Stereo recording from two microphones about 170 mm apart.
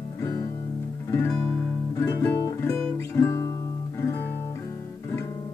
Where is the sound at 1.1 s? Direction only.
10° left (ahead or behind).